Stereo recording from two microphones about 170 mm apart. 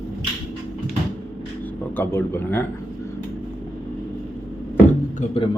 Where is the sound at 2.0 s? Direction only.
15° left (ahead or behind).